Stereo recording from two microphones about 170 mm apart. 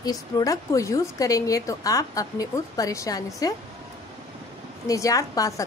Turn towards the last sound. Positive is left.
turn(degrees=20)  # may be behind; listen again after turning